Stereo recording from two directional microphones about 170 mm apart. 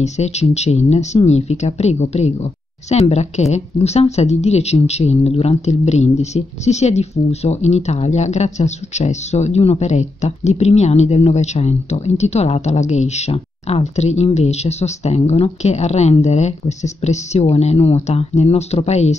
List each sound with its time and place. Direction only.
0.0 s speech: 40° left (ahead or behind)